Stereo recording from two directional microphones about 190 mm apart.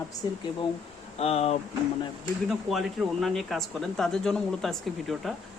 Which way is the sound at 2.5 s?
Centre (ahead or behind).